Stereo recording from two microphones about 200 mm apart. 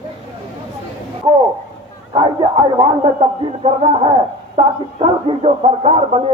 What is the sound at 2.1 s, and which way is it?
Speech, 20° right (ahead or behind).